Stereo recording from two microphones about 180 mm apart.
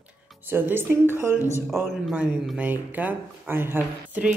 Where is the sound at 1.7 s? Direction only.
5° right (ahead or behind).